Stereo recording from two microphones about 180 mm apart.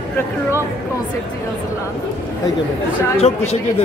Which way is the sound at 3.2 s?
35° left (ahead or behind).